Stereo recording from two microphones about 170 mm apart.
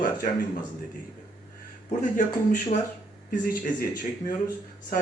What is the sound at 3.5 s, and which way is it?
Speech, 55° left (ahead or behind).